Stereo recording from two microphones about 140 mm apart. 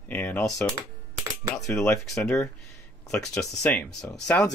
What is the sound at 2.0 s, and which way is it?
Speech, 20° left (ahead or behind).